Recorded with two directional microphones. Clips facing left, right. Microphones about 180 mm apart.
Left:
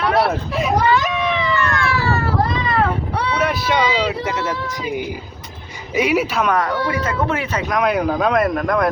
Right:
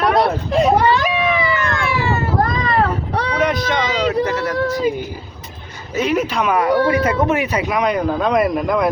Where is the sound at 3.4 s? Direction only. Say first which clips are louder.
Right 4 dB; 5° left (ahead or behind).